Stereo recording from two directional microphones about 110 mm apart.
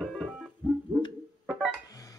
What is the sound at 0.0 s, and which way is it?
Music, centre (ahead or behind).